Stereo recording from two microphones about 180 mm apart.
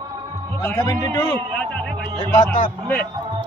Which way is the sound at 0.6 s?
10° left (ahead or behind).